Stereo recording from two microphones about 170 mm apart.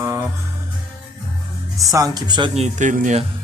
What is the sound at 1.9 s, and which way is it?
Speech, 20° right (ahead or behind).